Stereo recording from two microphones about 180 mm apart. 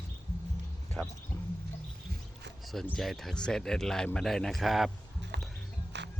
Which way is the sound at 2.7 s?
Centre (ahead or behind).